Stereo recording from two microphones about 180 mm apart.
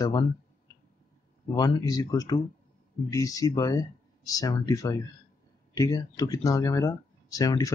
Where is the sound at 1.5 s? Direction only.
20° left (ahead or behind).